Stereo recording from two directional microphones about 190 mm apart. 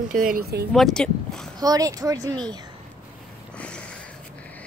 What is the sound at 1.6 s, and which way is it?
Speech, 20° right (ahead or behind).